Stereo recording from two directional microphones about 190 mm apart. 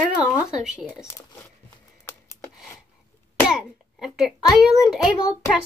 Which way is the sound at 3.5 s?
Centre (ahead or behind).